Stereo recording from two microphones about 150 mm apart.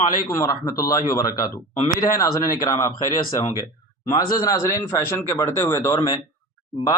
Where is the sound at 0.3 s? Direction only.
25° left (ahead or behind).